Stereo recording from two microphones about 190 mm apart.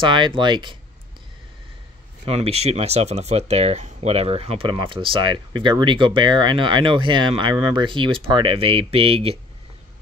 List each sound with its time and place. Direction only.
0.0 s speech: 25° right (ahead or behind)
2.2 s speech: 30° right (ahead or behind)